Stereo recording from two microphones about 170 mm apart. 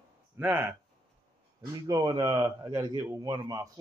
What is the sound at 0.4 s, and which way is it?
Speech, 15° right (ahead or behind).